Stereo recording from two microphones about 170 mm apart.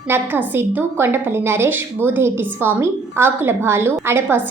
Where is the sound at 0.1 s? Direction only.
10° right (ahead or behind).